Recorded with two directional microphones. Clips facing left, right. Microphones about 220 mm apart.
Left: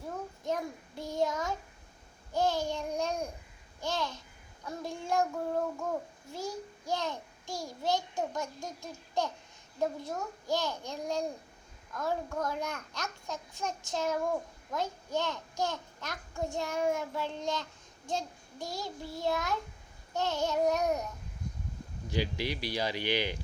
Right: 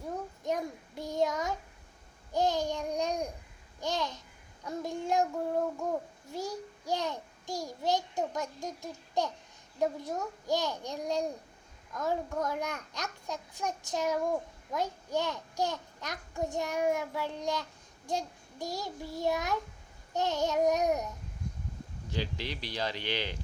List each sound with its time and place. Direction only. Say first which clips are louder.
0.4 s child singing: right 1 dB; 15° right (ahead or behind)
2.3 s babbling: right 1 dB; 15° right (ahead or behind)
4.6 s child singing: right 4 dB; 20° right (ahead or behind)
6.3 s a sound: right 1 dB; 15° right (ahead or behind)
9.8 s a child's voice: right 2 dB; 15° right (ahead or behind)
22.1 s speech: left 3 dB; 10° left (ahead or behind)